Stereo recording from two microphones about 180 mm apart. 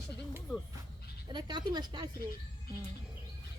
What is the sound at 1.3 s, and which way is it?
Speech, 25° right (ahead or behind).